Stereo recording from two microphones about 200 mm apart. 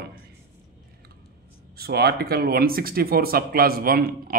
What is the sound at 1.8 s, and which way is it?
A man's voice, 50° right (ahead or behind).